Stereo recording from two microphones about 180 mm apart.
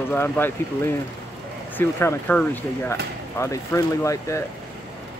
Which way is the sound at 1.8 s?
10° left (ahead or behind).